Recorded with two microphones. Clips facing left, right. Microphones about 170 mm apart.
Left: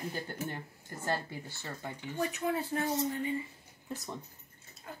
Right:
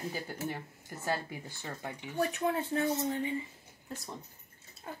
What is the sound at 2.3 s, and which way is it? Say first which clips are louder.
Speech: right 1 dB; 25° right (ahead or behind).